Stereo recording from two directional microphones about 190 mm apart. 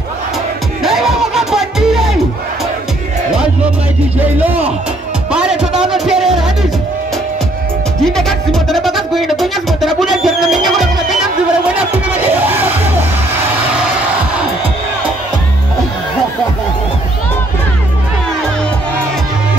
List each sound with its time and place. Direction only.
0.8 s music: centre (ahead or behind)
4.4 s music: 10° right (ahead or behind)
8.0 s music: centre (ahead or behind)